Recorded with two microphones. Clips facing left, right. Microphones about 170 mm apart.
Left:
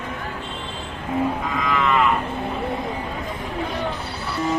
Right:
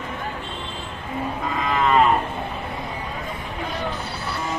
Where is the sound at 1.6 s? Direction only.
35° right (ahead or behind).